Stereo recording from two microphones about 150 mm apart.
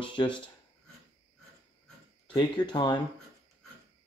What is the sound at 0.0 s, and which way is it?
Speech, 30° left (ahead or behind).